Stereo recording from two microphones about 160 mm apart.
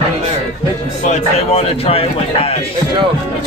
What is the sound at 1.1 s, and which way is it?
Speech, 40° left (ahead or behind).